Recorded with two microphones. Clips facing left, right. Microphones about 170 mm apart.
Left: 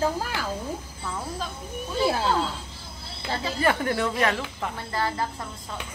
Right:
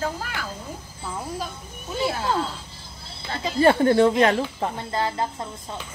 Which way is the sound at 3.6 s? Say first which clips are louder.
Right 9 dB; 30° right (ahead or behind).